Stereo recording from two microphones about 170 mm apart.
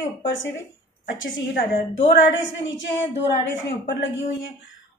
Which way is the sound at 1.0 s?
75° left (ahead or behind).